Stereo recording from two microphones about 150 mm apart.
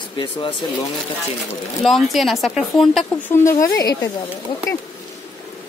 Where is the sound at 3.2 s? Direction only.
20° left (ahead or behind).